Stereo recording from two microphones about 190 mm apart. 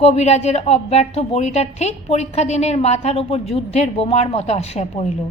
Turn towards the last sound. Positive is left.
turn(degrees=35)  # may be behind; listen again after turning